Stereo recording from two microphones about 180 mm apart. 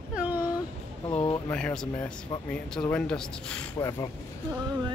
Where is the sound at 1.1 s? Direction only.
30° left (ahead or behind).